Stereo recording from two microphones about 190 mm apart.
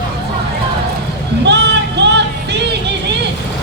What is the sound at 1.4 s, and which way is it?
Music, 65° right (ahead or behind).